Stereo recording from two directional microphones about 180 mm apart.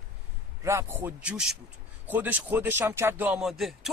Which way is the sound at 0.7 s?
15° right (ahead or behind).